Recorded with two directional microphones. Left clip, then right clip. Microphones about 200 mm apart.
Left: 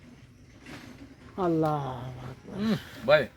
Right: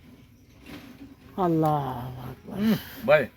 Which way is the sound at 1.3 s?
50° right (ahead or behind).